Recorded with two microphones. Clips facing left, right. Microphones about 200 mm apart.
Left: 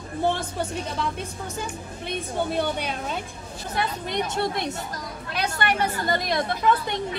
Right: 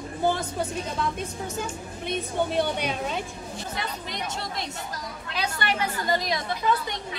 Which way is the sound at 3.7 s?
60° left (ahead or behind).